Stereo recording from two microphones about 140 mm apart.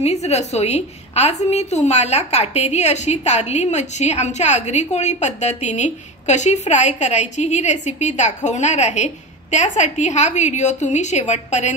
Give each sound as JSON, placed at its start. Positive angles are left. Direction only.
{"t": 0.0, "sound": "a woman's voice", "side_deg": 50}